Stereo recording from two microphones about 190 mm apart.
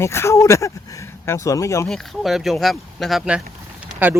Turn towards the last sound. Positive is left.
turn(degrees=-10)  # may be behind; listen again after turning